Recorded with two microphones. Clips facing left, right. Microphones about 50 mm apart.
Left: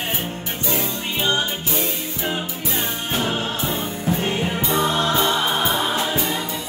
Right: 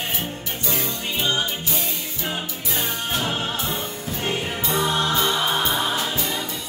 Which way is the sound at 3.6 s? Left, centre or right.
Centre.